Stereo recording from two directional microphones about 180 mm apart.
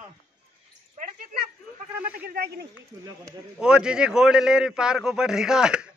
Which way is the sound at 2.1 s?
55° right (ahead or behind).